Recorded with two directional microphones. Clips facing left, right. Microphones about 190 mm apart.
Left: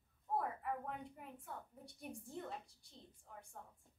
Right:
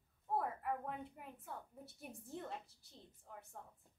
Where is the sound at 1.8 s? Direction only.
Centre (ahead or behind).